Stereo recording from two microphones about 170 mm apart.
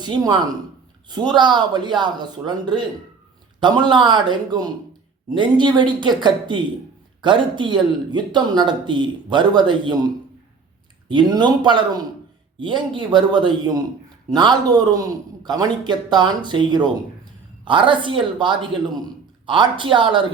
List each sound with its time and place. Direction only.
0.0 s speech: 25° right (ahead or behind)
11.1 s speech: 25° right (ahead or behind)